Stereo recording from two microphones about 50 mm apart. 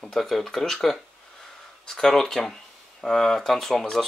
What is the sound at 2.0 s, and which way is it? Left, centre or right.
Speech, centre.